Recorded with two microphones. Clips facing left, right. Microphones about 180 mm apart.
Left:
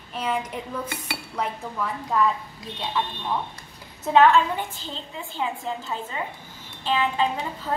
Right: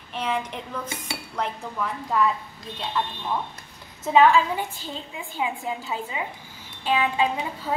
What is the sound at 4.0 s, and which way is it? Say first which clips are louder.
A woman's voice: even; centre (ahead or behind).